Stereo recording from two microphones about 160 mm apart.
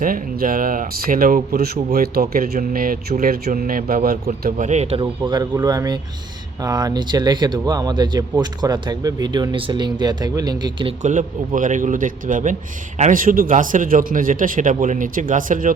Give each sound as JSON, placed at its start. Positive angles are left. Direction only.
{"t": 0.0, "sound": "a man's voice", "side_deg": -60}
{"t": 5.3, "sound": "speech", "side_deg": -25}
{"t": 11.0, "sound": "a man's voice", "side_deg": -50}